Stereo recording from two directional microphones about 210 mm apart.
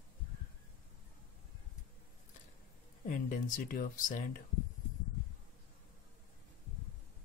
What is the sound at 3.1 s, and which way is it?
Speech, 40° left (ahead or behind).